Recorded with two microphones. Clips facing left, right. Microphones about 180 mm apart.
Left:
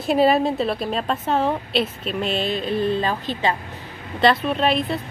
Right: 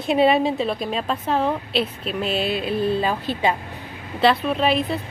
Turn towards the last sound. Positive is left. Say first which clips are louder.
# even
turn(degrees=0)  # may be behind; listen again after turning